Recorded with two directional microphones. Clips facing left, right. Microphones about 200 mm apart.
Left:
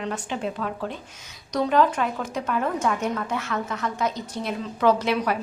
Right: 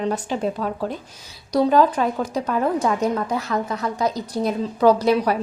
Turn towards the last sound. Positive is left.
turn(degrees=-35)  # may be behind; listen again after turning